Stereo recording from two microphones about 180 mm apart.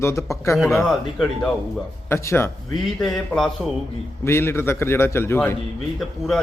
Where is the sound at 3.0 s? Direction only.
Centre (ahead or behind).